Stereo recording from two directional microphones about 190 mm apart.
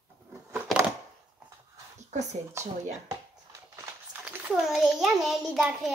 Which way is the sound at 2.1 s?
40° right (ahead or behind).